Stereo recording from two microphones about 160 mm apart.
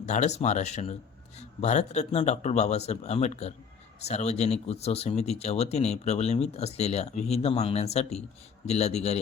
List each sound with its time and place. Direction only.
0.0 s speech: 45° left (ahead or behind)